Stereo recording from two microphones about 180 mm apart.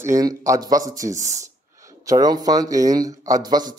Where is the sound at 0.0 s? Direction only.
20° right (ahead or behind).